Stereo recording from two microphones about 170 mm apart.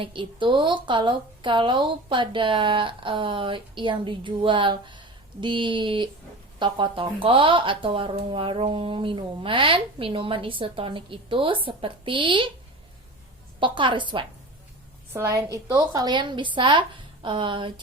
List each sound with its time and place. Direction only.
0.0 s a woman's voice: 30° right (ahead or behind)
13.6 s a woman's voice: 30° right (ahead or behind)
15.1 s a woman's voice: 15° right (ahead or behind)